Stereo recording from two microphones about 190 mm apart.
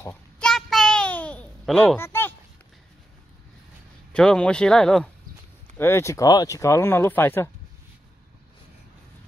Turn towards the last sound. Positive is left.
turn(degrees=10)  # may be behind; listen again after turning